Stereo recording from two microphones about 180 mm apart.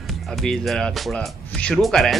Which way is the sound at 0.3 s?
Centre (ahead or behind).